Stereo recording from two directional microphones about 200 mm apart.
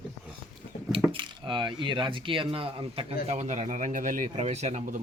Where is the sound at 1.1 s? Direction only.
25° right (ahead or behind).